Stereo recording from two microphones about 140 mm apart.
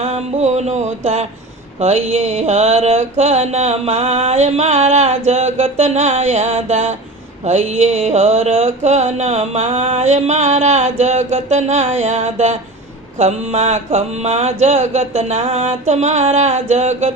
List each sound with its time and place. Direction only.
0.0 s mantra: 50° right (ahead or behind)